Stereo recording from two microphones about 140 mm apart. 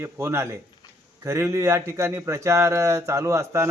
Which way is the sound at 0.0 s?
20° right (ahead or behind).